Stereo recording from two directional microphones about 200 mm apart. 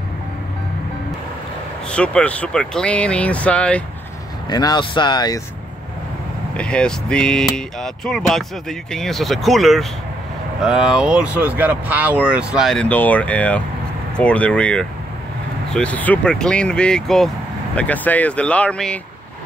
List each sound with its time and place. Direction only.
1.9 s speech: 5° left (ahead or behind)
4.5 s speech: 20° left (ahead or behind)
6.5 s speech: 5° left (ahead or behind)